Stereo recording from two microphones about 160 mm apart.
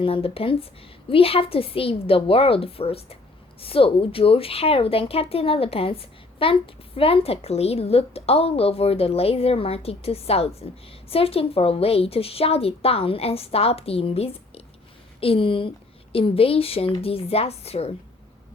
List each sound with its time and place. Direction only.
0.0 s a woman's voice: 35° left (ahead or behind)